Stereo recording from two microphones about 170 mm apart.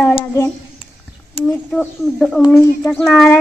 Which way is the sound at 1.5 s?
5° left (ahead or behind).